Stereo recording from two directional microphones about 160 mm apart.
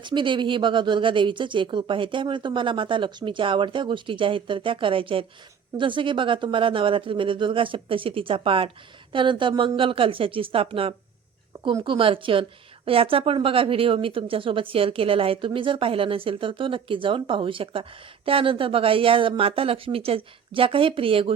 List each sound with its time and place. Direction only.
0.0 s speech: 30° right (ahead or behind)